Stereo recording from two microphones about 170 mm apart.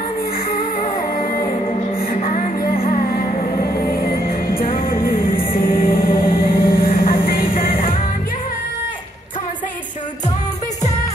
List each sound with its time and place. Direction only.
0.6 s music: 55° left (ahead or behind)
2.1 s music: 35° left (ahead or behind)
2.7 s music: 50° left (ahead or behind)